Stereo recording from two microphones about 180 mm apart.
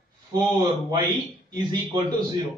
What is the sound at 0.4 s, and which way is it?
Speech, 25° right (ahead or behind).